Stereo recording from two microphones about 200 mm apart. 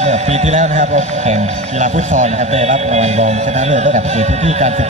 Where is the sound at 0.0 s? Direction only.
35° right (ahead or behind).